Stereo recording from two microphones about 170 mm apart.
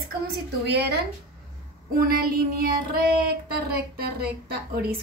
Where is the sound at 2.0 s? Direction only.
60° right (ahead or behind).